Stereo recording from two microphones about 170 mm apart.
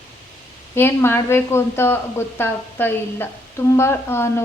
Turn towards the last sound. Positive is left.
turn(degrees=15)  # may be behind; listen again after turning